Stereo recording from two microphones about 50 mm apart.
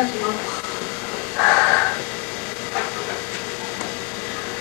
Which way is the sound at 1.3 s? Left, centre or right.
Centre.